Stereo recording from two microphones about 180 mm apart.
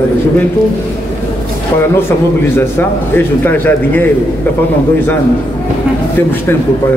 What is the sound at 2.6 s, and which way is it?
A man's voice, 10° left (ahead or behind).